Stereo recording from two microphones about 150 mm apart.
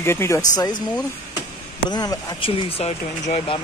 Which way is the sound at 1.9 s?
25° left (ahead or behind).